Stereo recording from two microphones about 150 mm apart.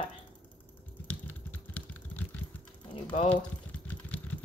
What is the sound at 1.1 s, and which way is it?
Typing, 10° left (ahead or behind).